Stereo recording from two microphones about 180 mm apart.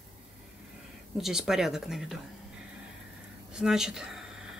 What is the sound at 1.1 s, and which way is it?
Speech, centre (ahead or behind).